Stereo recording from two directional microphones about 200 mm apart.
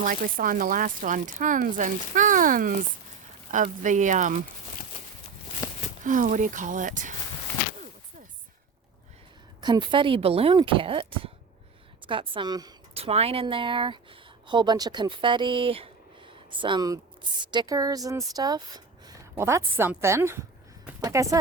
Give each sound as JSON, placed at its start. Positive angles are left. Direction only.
{"t": 0.0, "sound": "speech", "side_deg": -45}
{"t": 5.6, "sound": "a sound", "side_deg": 15}
{"t": 6.1, "sound": "speech", "side_deg": -40}
{"t": 9.6, "sound": "a woman's voice", "side_deg": -20}